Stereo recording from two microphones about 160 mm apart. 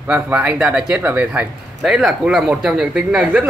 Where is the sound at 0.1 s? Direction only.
10° right (ahead or behind).